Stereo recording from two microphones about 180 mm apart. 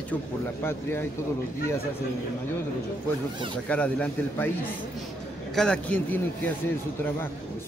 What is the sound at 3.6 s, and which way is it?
Speech, 5° left (ahead or behind).